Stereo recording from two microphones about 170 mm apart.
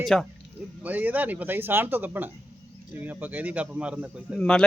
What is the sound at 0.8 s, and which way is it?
Speech, 10° right (ahead or behind).